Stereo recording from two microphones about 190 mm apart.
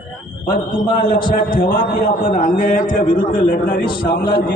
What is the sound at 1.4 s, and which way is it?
A man's voice, 50° left (ahead or behind).